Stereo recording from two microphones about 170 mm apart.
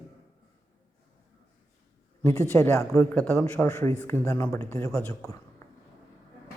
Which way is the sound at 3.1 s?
5° left (ahead or behind).